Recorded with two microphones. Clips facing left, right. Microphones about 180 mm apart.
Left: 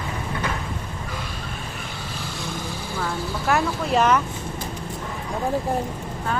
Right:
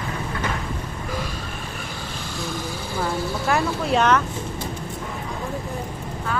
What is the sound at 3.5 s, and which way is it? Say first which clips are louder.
Vehicle: even; centre (ahead or behind).